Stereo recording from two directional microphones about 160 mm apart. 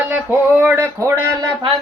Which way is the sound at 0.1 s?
10° right (ahead or behind).